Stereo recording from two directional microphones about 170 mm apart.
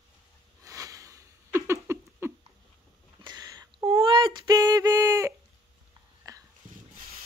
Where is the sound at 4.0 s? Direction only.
30° right (ahead or behind).